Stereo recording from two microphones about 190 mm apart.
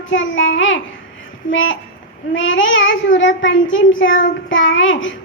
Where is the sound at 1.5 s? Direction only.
90° left.